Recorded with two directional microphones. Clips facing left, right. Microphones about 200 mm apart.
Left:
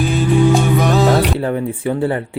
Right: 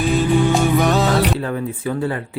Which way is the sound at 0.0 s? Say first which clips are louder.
Left 2 dB; centre (ahead or behind).